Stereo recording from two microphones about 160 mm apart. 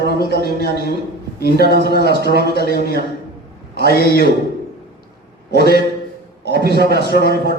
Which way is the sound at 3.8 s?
75° left (ahead or behind).